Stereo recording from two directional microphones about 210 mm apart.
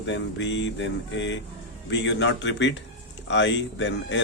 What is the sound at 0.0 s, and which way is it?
Speech, 60° left (ahead or behind).